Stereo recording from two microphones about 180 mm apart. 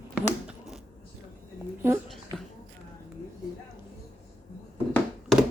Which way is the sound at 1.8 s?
15° right (ahead or behind).